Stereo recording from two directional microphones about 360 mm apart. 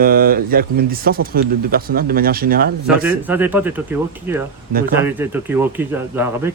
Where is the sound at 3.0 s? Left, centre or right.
Centre.